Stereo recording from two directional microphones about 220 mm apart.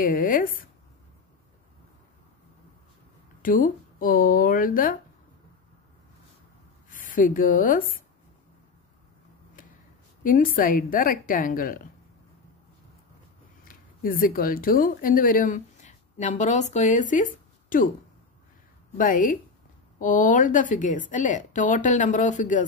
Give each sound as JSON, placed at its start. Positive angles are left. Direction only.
{"t": 0.0, "sound": "speech", "side_deg": 40}
{"t": 3.4, "sound": "speech", "side_deg": 40}
{"t": 6.9, "sound": "a woman's voice", "side_deg": 35}
{"t": 10.2, "sound": "speech", "side_deg": 40}
{"t": 13.7, "sound": "speech", "side_deg": 40}
{"t": 18.9, "sound": "speech", "side_deg": 40}